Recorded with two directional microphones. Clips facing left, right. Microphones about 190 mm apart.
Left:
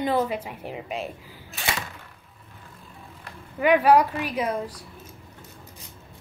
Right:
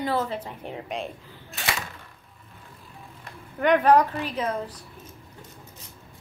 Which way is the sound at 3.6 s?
10° left (ahead or behind).